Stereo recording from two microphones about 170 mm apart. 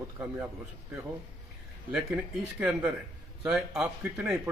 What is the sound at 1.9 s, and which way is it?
A man's voice, 5° right (ahead or behind).